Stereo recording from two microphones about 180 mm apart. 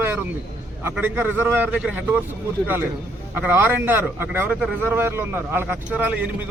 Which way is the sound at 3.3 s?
10° right (ahead or behind).